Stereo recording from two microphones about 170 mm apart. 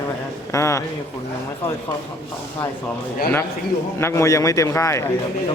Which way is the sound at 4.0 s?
15° left (ahead or behind).